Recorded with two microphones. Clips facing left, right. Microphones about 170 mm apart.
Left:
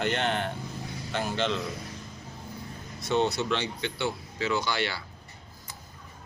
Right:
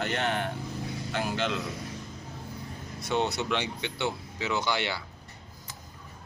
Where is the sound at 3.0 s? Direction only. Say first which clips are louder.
Left 2 dB; 15° right (ahead or behind).